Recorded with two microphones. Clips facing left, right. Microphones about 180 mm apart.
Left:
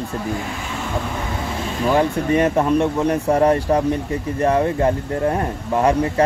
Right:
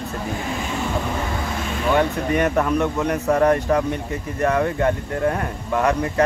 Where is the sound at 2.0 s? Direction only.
30° left (ahead or behind).